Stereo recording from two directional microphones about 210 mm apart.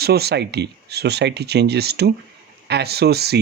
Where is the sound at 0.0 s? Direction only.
50° right (ahead or behind).